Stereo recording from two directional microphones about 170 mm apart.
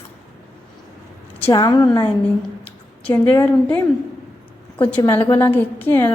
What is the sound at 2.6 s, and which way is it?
A woman's voice, 10° left (ahead or behind).